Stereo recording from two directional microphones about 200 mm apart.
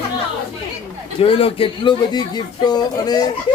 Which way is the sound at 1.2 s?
30° left (ahead or behind).